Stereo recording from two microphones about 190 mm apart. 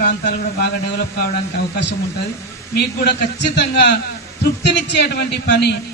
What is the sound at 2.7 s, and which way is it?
Speech, 60° left (ahead or behind).